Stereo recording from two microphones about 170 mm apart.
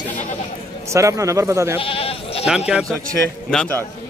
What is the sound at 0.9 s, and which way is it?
Speech, 20° right (ahead or behind).